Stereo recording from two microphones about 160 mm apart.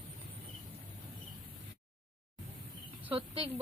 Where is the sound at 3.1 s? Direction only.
35° right (ahead or behind).